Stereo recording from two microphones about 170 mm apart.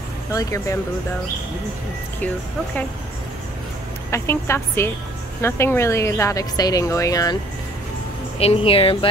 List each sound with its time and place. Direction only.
0.3 s speech: 20° left (ahead or behind)
4.1 s speech: 15° left (ahead or behind)
8.4 s a woman's voice: 35° left (ahead or behind)